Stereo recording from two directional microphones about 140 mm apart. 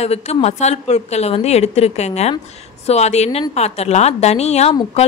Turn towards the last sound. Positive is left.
turn(degrees=50)  # may be behind; listen again after turning